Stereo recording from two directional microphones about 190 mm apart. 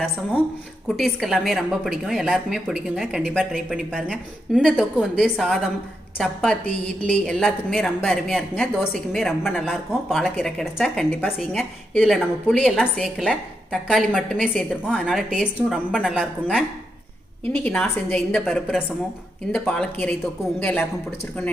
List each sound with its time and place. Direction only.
0.9 s speech: centre (ahead or behind)
17.6 s speech: 5° left (ahead or behind)